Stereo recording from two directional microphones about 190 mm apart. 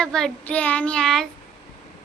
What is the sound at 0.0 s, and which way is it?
Child singing, 5° left (ahead or behind).